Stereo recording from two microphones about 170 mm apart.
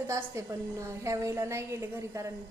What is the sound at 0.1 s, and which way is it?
A woman's voice, 15° right (ahead or behind).